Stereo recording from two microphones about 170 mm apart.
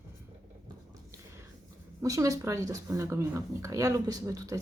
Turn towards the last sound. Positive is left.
turn(degrees=-20)  # may be behind; listen again after turning